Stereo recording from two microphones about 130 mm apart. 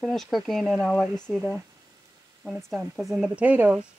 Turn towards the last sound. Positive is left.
turn(degrees=-10)  # may be behind; listen again after turning